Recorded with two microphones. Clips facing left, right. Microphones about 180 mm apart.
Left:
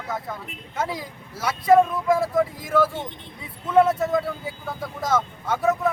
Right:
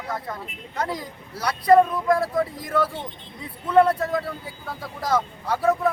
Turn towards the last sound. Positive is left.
turn(degrees=0)  # may be behind; listen again after turning